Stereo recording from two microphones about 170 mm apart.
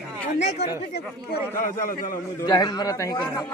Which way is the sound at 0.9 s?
60° left (ahead or behind).